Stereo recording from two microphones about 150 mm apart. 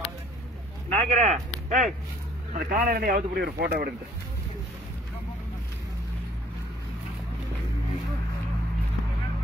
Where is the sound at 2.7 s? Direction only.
85° right.